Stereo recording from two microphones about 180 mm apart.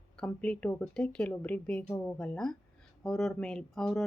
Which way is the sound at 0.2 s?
5° left (ahead or behind).